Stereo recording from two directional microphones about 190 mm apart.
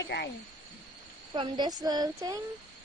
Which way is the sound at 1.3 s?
25° right (ahead or behind).